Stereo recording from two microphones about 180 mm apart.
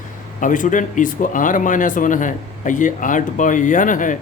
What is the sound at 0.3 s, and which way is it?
Speech, 45° left (ahead or behind).